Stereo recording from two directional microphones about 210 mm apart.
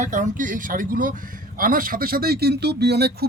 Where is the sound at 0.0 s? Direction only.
35° right (ahead or behind).